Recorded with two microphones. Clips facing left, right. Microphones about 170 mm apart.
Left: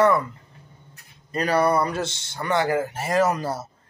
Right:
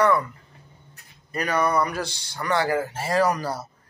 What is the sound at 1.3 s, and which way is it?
A man's voice, 30° left (ahead or behind).